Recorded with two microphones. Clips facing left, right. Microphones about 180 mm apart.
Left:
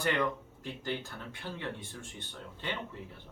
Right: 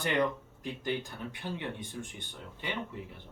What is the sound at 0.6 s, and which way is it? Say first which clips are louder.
Speech: right 3 dB; 15° right (ahead or behind).